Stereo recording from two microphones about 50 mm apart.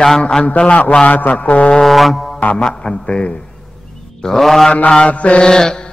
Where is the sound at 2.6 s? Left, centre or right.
Centre.